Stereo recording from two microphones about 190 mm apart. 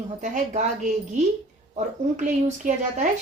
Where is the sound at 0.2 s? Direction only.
40° right (ahead or behind).